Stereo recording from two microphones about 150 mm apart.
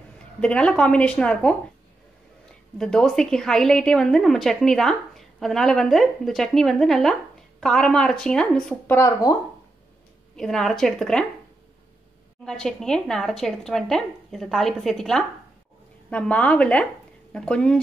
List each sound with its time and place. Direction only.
0.4 s a woman's voice: 5° left (ahead or behind)
2.8 s a woman's voice: 5° left (ahead or behind)
8.9 s speech: 20° left (ahead or behind)
10.3 s a woman's voice: 5° left (ahead or behind)
12.4 s a woman's voice: 5° left (ahead or behind)